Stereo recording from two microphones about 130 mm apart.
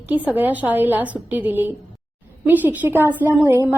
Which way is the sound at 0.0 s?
15° right (ahead or behind).